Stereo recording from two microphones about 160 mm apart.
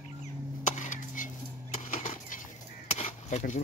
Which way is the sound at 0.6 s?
50° left (ahead or behind).